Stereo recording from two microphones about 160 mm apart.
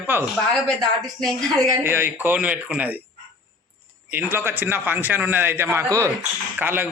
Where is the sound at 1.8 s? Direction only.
15° right (ahead or behind).